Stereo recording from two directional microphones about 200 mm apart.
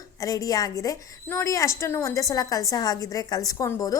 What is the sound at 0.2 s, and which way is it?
A woman's voice, 15° left (ahead or behind).